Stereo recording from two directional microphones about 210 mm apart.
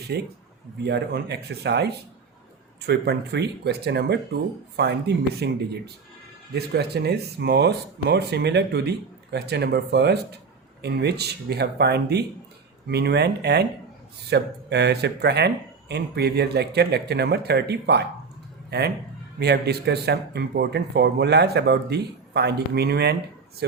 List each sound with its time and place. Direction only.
0.1 s speech: 50° right (ahead or behind)
19.4 s speech: 50° right (ahead or behind)